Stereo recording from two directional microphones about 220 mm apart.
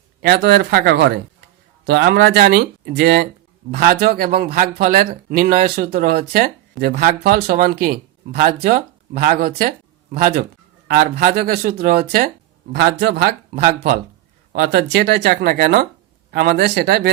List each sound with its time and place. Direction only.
0.2 s speech: 50° right (ahead or behind)
13.5 s speech: 35° right (ahead or behind)